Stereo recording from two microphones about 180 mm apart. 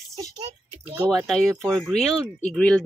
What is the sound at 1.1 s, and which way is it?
Speech, centre (ahead or behind).